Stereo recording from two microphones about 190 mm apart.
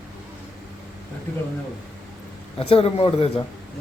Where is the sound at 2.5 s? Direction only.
30° left (ahead or behind).